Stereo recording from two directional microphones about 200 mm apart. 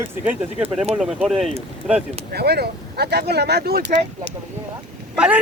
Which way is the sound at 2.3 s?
55° right (ahead or behind).